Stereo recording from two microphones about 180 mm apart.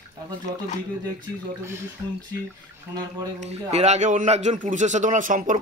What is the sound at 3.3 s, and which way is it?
A man's voice, 40° right (ahead or behind).